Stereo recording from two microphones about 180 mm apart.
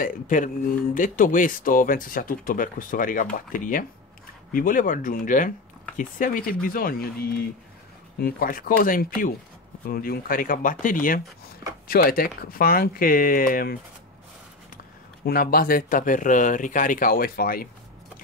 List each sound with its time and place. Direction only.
0.0 s speech: 50° left (ahead or behind)
15.2 s speech: 55° left (ahead or behind)